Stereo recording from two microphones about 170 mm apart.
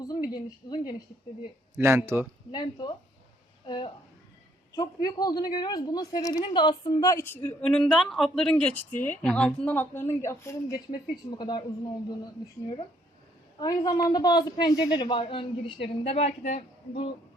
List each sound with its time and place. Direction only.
0.0 s a woman's voice: 25° left (ahead or behind)
1.8 s speech: 15° right (ahead or behind)
2.5 s a woman's voice: 25° left (ahead or behind)
13.6 s speech: 25° left (ahead or behind); by 17.0 s 50° left (ahead or behind)